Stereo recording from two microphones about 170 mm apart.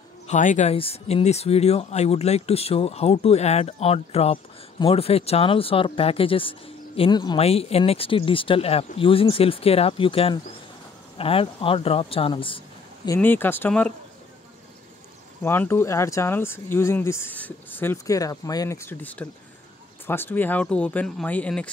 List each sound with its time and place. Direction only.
0.3 s speech: 45° left (ahead or behind); by 7.3 s 25° left (ahead or behind)
7.3 s speech: 35° left (ahead or behind)
13.1 s speech: 10° left (ahead or behind)
15.4 s speech: 15° left (ahead or behind)